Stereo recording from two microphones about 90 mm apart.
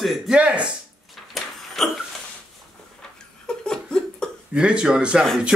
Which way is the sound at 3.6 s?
10° left (ahead or behind).